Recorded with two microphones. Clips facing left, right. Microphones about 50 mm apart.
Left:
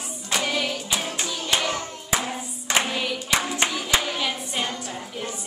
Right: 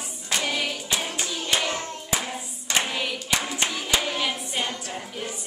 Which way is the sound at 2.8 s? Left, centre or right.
Centre.